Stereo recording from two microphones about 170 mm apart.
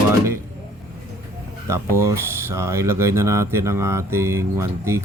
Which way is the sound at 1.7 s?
15° right (ahead or behind).